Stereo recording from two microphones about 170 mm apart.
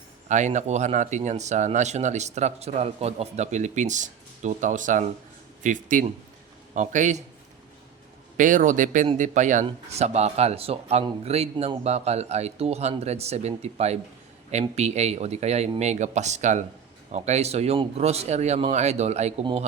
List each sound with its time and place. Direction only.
0.3 s speech: 45° right (ahead or behind)
8.4 s speech: 50° right (ahead or behind)